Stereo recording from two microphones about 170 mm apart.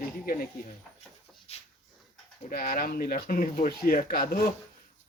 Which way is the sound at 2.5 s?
60° left (ahead or behind).